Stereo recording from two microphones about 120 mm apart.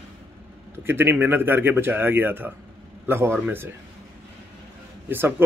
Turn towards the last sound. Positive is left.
turn(degrees=-20)  # may be behind; listen again after turning